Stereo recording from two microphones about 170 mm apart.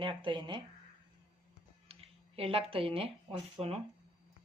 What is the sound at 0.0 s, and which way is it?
Speech, 30° right (ahead or behind).